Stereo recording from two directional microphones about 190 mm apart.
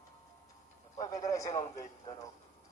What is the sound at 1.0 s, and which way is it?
Speech, 15° left (ahead or behind).